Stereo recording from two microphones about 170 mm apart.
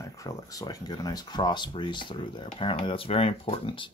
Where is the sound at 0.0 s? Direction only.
20° left (ahead or behind).